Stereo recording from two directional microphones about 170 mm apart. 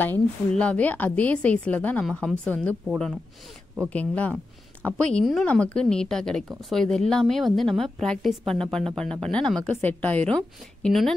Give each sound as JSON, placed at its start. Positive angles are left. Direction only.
{"t": 0.0, "sound": "a woman's voice", "side_deg": 10}
{"t": 3.9, "sound": "a woman's voice", "side_deg": 10}